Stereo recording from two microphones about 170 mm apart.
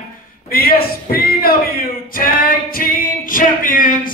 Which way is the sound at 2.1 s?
55° left (ahead or behind).